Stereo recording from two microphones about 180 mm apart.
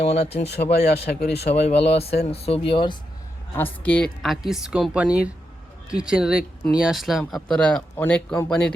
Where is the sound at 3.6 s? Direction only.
10° left (ahead or behind).